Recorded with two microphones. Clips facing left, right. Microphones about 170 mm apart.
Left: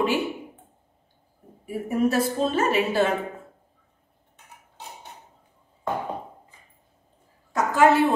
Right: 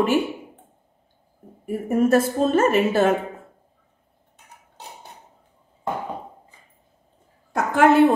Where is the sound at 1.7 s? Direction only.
50° right (ahead or behind).